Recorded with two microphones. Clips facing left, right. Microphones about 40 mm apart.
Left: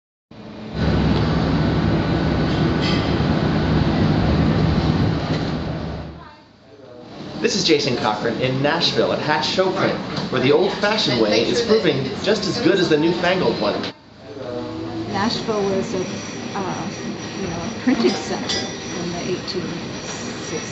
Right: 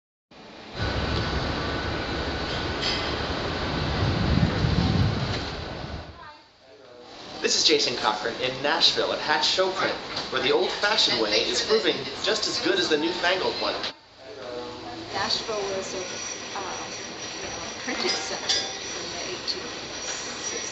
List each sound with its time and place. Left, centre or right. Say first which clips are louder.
0.7 s vehicle: left 9 dB; centre
7.4 s speech: left 5 dB; centre
15.1 s speech: left 7 dB; centre
18.1 s speech: left 6 dB; centre
18.5 s train: left 4 dB; centre
20.1 s vehicle: left 5 dB; centre